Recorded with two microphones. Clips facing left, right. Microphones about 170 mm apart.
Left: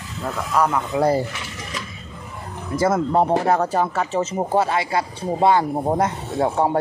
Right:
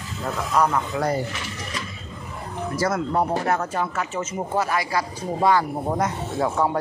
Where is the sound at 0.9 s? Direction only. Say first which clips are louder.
Left 5 dB; 30° left (ahead or behind).